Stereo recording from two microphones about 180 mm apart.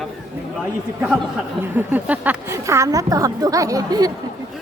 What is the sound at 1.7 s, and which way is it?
Speech, 10° right (ahead or behind).